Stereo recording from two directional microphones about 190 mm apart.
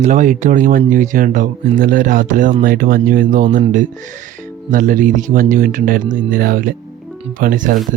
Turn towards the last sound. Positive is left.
turn(degrees=-45)  # may be behind; listen again after turning